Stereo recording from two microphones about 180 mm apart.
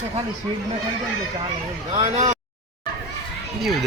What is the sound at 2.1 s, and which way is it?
Speech, 40° right (ahead or behind).